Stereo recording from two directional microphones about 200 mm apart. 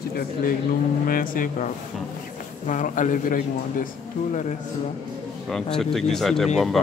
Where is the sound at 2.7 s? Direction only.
40° left (ahead or behind).